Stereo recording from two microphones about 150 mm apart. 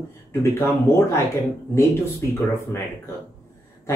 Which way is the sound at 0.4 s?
15° left (ahead or behind).